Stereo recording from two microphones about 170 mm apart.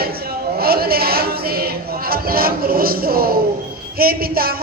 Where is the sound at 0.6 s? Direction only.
65° right (ahead or behind).